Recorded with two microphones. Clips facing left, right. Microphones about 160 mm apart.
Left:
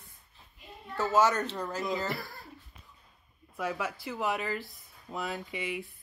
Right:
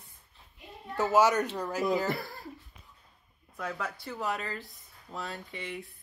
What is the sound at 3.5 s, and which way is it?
A woman's voice, 10° left (ahead or behind).